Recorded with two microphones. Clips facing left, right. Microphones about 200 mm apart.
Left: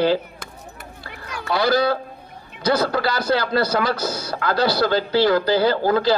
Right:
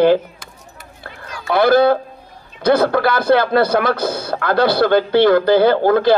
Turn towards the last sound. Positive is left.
turn(degrees=-55)  # may be behind; listen again after turning